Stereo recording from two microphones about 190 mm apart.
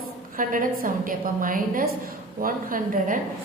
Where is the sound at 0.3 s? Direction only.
45° right (ahead or behind).